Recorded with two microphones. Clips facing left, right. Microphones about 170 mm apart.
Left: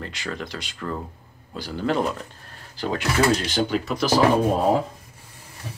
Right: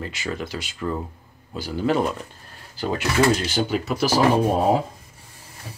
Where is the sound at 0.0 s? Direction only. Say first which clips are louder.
Right 2 dB; 5° right (ahead or behind).